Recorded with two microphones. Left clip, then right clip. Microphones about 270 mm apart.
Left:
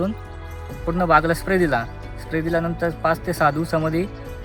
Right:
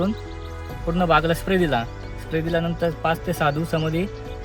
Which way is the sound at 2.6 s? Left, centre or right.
Centre.